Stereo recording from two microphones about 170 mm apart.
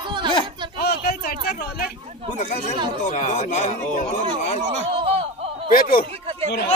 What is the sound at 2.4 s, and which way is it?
Speech, 40° left (ahead or behind).